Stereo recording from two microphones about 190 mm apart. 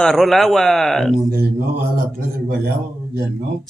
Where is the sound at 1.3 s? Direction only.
55° right (ahead or behind).